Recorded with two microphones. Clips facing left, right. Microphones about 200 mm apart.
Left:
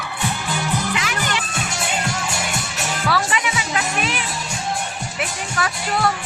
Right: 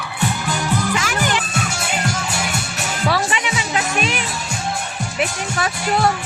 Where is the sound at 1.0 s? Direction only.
45° right (ahead or behind).